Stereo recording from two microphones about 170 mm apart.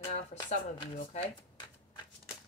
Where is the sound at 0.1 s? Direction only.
40° left (ahead or behind).